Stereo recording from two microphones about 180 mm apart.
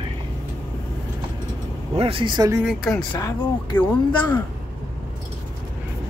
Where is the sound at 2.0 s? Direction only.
30° right (ahead or behind).